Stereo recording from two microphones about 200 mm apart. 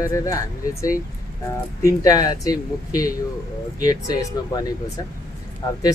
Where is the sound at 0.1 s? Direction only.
15° left (ahead or behind).